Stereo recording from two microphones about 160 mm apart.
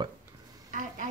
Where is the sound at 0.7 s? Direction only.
55° right (ahead or behind).